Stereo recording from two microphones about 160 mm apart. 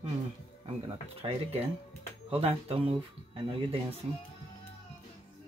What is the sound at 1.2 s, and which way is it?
Speech, 30° right (ahead or behind).